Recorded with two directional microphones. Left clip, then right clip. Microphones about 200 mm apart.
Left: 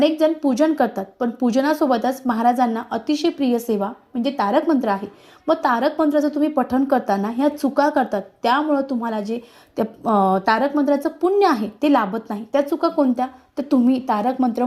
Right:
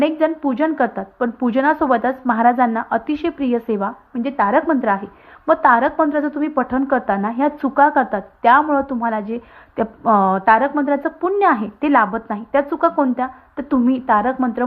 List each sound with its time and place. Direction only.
0.0 s a woman's voice: 10° right (ahead or behind)